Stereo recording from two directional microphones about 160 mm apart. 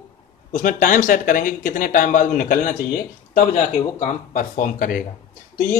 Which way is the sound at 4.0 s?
55° left (ahead or behind).